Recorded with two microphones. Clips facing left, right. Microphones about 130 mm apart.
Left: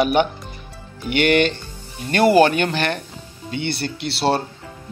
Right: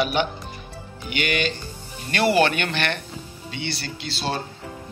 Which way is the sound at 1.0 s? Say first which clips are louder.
Left 8 dB; 65° left (ahead or behind).